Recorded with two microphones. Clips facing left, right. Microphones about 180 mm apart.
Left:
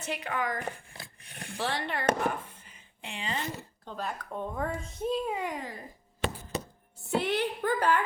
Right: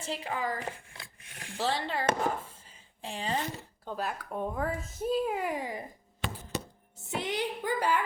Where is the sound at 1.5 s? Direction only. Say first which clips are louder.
Right 1 dB; 25° right (ahead or behind).